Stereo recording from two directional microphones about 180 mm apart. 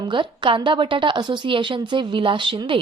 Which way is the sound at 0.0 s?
25° right (ahead or behind).